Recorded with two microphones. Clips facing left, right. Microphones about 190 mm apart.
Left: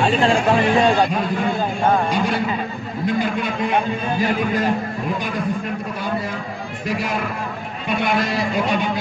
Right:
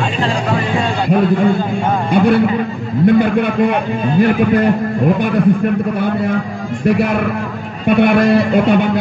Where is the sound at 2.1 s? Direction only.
60° right (ahead or behind).